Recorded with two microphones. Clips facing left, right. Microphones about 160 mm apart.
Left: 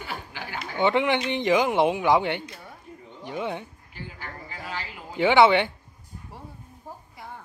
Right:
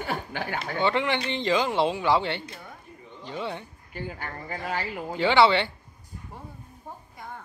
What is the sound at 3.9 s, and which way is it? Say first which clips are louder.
Speech: right 6 dB; 50° right (ahead or behind).